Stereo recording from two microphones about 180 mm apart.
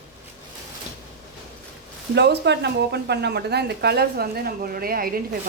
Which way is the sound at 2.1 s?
70° right (ahead or behind).